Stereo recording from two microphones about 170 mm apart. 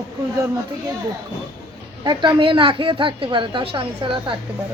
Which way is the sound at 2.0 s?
30° right (ahead or behind).